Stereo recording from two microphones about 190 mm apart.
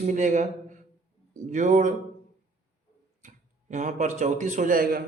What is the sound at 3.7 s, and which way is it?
Speech, 40° right (ahead or behind).